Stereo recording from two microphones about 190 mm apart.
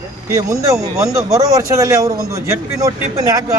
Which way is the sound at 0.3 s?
15° right (ahead or behind).